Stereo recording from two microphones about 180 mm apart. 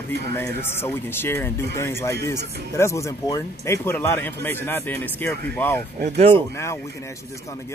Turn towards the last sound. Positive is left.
turn(degrees=15)  # may be behind; listen again after turning